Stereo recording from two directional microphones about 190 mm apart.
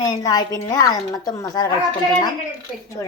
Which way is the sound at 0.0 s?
20° left (ahead or behind).